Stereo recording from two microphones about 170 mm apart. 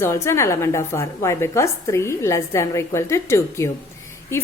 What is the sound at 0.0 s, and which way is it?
A woman's voice, 15° left (ahead or behind).